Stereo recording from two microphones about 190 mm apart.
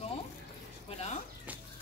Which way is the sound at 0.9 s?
35° left (ahead or behind).